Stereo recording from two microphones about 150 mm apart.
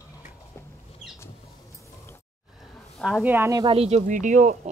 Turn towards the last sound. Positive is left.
turn(degrees=-55)  # may be behind; listen again after turning